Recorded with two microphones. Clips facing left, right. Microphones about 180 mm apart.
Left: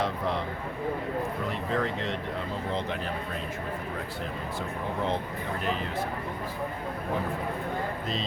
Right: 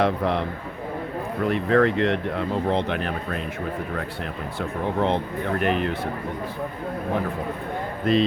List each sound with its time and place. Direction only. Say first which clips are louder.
0.0 s speech: right 7 dB; 65° right (ahead or behind)
1.5 s speech: right 15 dB; 65° right (ahead or behind)
4.9 s speech: right 7 dB; 65° right (ahead or behind)
8.1 s speech: right 18 dB; 60° right (ahead or behind)